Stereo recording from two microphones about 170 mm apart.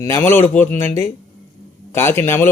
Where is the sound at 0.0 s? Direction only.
15° left (ahead or behind).